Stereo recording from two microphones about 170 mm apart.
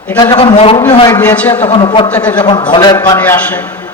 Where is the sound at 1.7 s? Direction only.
25° left (ahead or behind).